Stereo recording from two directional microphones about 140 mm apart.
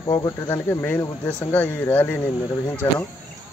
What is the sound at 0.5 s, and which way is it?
Speech, 15° left (ahead or behind).